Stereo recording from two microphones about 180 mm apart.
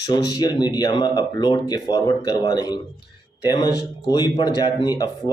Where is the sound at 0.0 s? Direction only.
20° left (ahead or behind).